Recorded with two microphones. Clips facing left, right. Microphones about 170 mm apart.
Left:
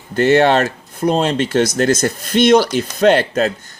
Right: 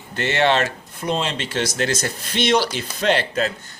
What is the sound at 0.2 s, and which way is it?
A man's voice, 45° left (ahead or behind).